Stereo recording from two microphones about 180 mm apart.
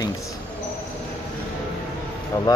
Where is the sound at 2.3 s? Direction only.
15° left (ahead or behind).